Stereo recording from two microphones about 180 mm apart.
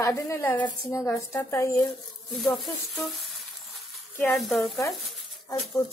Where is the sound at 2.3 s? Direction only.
Centre (ahead or behind).